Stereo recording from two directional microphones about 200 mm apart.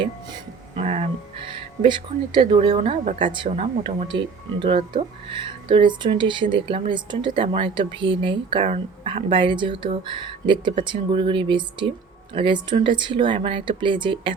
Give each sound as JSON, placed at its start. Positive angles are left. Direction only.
{"t": 0.8, "sound": "speech", "side_deg": -30}
{"t": 3.3, "sound": "speech", "side_deg": -30}